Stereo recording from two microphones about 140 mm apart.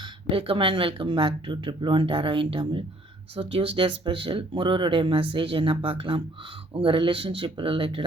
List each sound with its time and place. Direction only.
0.0 s speech: 40° right (ahead or behind)